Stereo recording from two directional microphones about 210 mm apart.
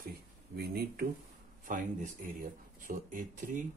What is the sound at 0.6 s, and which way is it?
Speech, 45° right (ahead or behind).